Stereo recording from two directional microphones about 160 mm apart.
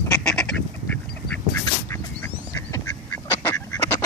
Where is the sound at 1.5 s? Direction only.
15° left (ahead or behind).